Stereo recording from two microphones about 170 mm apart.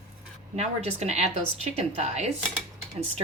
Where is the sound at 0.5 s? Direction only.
40° right (ahead or behind).